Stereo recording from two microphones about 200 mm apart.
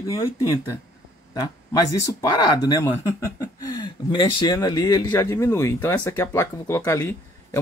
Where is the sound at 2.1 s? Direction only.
20° left (ahead or behind).